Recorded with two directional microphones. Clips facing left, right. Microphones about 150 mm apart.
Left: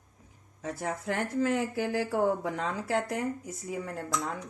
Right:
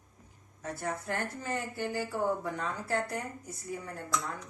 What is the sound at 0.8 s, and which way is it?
Speech, 90° left.